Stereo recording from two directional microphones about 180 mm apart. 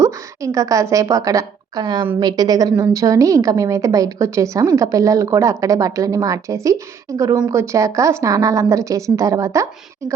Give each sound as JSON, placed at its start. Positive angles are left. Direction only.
{"t": 0.0, "sound": "a woman's voice", "side_deg": -15}